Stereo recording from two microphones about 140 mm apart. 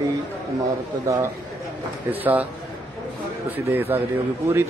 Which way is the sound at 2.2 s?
10° right (ahead or behind).